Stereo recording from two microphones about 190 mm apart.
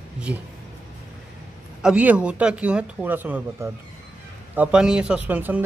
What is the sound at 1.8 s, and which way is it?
Speech, 5° right (ahead or behind).